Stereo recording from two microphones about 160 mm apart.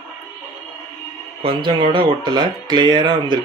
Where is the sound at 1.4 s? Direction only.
30° right (ahead or behind).